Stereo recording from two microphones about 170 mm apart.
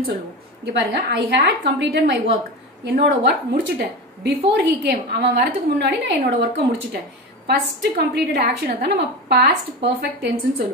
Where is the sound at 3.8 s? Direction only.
75° right (ahead or behind).